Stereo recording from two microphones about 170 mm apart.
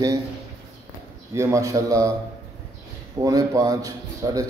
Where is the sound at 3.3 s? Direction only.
20° right (ahead or behind).